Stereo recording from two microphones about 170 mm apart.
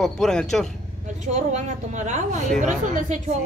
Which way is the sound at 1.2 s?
45° right (ahead or behind).